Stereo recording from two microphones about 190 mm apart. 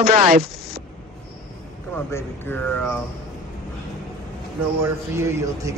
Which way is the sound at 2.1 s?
10° left (ahead or behind).